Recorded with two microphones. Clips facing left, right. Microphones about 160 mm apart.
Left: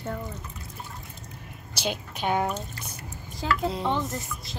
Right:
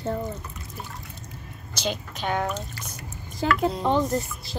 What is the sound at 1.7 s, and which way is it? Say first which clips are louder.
Speech: right 1 dB; 10° left (ahead or behind).